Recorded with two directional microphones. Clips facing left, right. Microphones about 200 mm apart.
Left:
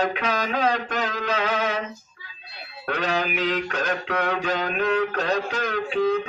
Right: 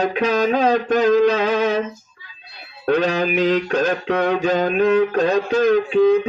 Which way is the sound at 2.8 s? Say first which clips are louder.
Right 8 dB; 35° right (ahead or behind).